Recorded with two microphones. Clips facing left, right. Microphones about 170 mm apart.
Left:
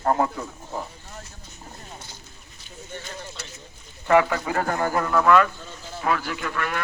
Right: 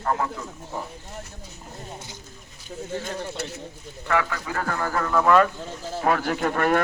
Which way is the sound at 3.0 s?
55° right (ahead or behind).